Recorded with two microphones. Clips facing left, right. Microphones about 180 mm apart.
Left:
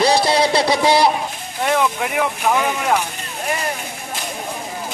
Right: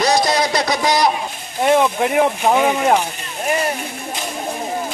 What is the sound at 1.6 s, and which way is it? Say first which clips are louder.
Speech: right 4 dB; 25° right (ahead or behind).